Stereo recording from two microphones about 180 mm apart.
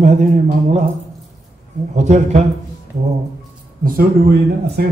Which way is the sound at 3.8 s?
60° right (ahead or behind).